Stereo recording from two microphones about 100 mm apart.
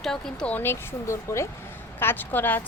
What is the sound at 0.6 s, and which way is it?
Speech, 25° left (ahead or behind).